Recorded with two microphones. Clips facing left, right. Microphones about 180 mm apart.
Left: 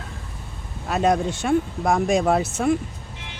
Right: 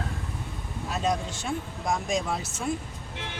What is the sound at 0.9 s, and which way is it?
Speech, 65° left (ahead or behind).